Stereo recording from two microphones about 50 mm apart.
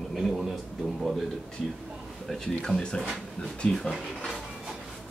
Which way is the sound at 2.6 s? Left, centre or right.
Centre.